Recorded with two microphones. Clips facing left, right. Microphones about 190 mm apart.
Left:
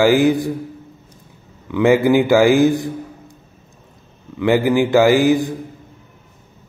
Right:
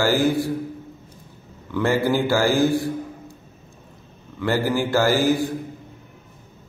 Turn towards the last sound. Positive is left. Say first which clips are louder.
# left 6 dB
turn(degrees=15)  # may be behind; listen again after turning